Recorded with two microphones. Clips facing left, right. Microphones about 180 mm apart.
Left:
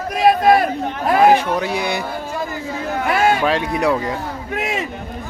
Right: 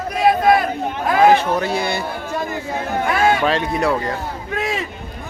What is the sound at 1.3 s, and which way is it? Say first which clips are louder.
Speech: even; 10° left (ahead or behind).